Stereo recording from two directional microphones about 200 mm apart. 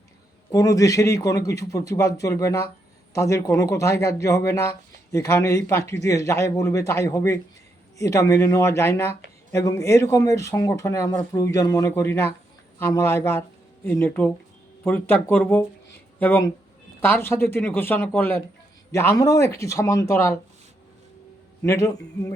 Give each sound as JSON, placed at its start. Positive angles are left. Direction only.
{"t": 0.5, "sound": "speech", "side_deg": 15}
{"t": 21.6, "sound": "speech", "side_deg": 15}